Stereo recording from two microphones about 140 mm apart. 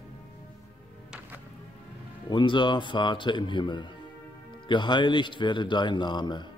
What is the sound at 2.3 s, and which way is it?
Speech, 35° left (ahead or behind).